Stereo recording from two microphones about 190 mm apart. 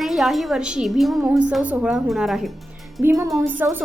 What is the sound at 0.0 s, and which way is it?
A woman's voice, centre (ahead or behind).